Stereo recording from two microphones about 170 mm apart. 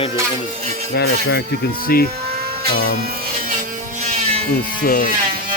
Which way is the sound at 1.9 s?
60° left (ahead or behind).